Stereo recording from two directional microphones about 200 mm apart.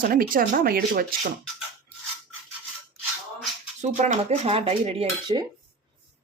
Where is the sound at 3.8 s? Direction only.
35° right (ahead or behind).